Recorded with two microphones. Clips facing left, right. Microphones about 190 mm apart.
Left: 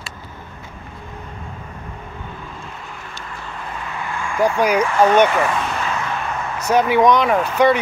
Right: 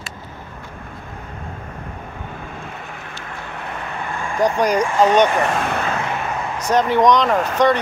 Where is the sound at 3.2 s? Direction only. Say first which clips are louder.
Right 1 dB; 65° right (ahead or behind).